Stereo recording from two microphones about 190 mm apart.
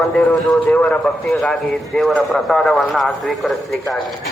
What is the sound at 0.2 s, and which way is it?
A man's voice, centre (ahead or behind).